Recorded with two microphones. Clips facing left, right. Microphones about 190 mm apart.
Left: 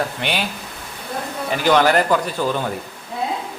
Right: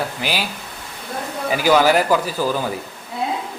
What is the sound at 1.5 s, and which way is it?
A man's voice, 5° right (ahead or behind).